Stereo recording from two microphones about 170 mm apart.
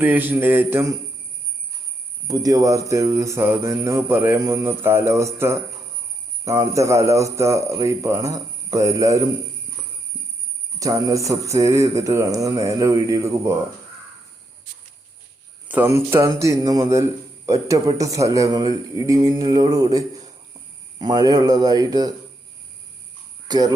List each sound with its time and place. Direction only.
0.0 s speech: 10° right (ahead or behind)
2.2 s a man's voice: 20° right (ahead or behind)
10.8 s a man's voice: 20° right (ahead or behind)
15.7 s a man's voice: 15° right (ahead or behind)
23.5 s speech: 25° right (ahead or behind)